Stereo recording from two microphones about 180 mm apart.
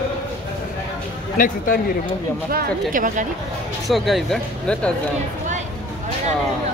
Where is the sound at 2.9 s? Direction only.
45° right (ahead or behind).